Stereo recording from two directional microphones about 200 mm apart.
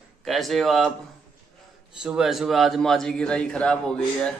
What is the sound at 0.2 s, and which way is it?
Speech, centre (ahead or behind).